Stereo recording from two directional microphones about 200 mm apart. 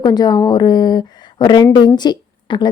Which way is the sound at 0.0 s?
20° left (ahead or behind).